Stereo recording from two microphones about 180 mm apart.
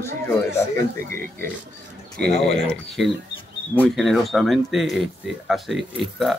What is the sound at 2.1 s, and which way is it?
Speech, 65° right (ahead or behind).